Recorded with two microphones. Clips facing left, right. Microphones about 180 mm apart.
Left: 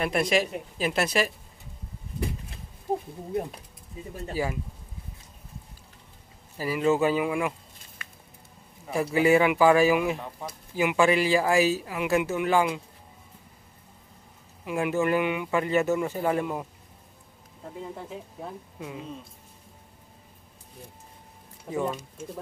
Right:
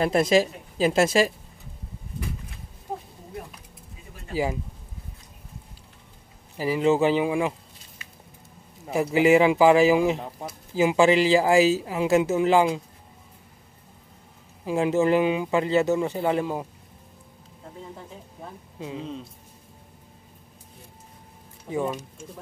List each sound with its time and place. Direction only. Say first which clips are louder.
0.0 s speech: right 5 dB; 30° right (ahead or behind)
6.5 s speech: right 3 dB; 15° right (ahead or behind)
8.0 s a sound: left 3 dB; 55° left (ahead or behind)
8.9 s speech: right 3 dB; 20° right (ahead or behind)
14.6 s speech: right 4 dB; 30° right (ahead or behind)
18.8 s speech: right 5 dB; 25° right (ahead or behind)
21.7 s speech: right 2 dB; 10° right (ahead or behind)